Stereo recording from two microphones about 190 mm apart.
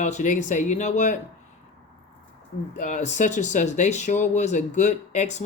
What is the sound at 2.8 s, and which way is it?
Speech, 40° left (ahead or behind).